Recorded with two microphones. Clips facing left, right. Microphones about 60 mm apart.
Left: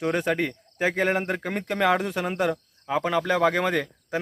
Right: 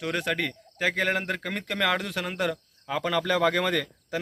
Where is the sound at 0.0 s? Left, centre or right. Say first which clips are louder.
Left 4 dB; left.